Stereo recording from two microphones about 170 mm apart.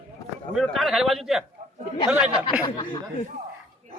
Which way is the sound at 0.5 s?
Centre (ahead or behind).